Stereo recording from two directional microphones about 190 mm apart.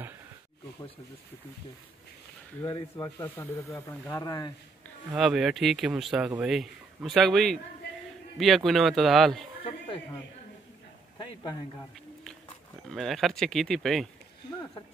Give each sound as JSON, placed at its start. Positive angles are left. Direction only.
{"t": 2.6, "sound": "speech", "side_deg": 15}
{"t": 5.1, "sound": "speech", "side_deg": 0}
{"t": 12.9, "sound": "speech", "side_deg": 0}